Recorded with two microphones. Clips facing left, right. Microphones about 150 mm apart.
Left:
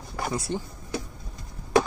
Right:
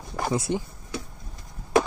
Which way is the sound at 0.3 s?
20° right (ahead or behind).